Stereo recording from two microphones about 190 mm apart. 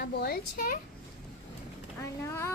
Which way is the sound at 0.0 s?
55° left (ahead or behind).